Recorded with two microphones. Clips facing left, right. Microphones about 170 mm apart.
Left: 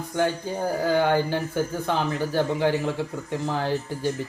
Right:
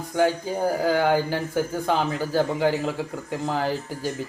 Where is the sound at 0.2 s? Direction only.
10° right (ahead or behind).